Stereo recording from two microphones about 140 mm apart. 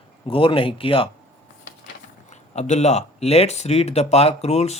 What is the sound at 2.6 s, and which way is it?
Speech, 55° left (ahead or behind).